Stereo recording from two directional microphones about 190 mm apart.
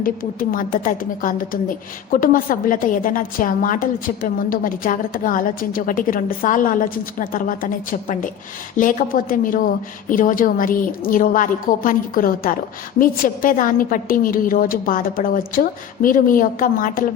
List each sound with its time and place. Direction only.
0.0 s a woman's voice: 50° left (ahead or behind)